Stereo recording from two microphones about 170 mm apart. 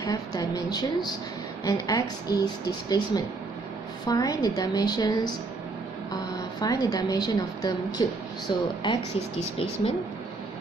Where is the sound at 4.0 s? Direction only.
20° left (ahead or behind).